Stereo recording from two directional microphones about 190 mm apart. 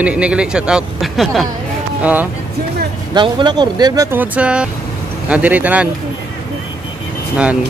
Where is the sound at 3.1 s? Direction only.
25° right (ahead or behind); by 5.9 s 10° right (ahead or behind).